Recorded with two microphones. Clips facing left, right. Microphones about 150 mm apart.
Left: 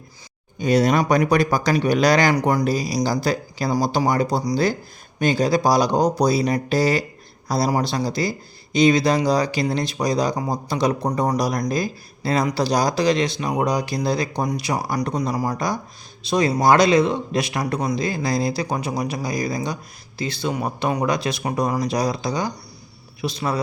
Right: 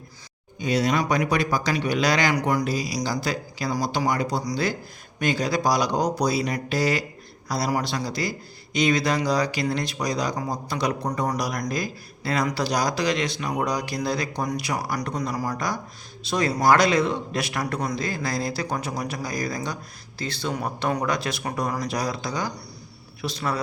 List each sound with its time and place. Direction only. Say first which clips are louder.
0.6 s a man's voice: left 5 dB; 45° left (ahead or behind); by 23.6 s 20° left (ahead or behind)